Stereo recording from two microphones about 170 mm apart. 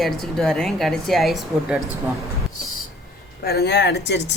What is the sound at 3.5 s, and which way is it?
Speech, 70° left (ahead or behind).